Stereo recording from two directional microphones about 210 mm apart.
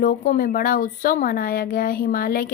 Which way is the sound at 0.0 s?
40° left (ahead or behind).